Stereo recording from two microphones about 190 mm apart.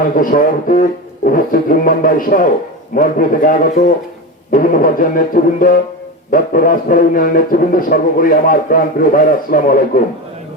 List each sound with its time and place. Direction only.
0.2 s speech: 45° left (ahead or behind)